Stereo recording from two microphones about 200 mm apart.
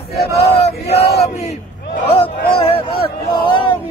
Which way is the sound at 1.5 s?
30° left (ahead or behind).